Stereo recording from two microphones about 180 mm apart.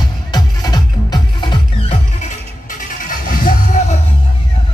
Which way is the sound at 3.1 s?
50° left (ahead or behind).